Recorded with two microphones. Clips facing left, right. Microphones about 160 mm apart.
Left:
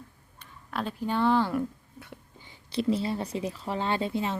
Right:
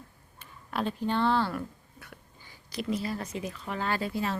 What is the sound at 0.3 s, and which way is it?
Speech, centre (ahead or behind).